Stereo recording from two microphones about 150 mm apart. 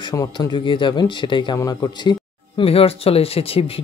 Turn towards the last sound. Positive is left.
turn(degrees=40)  # may be behind; listen again after turning